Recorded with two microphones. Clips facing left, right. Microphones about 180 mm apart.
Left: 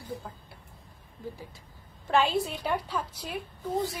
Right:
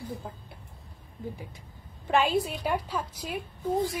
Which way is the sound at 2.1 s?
10° right (ahead or behind).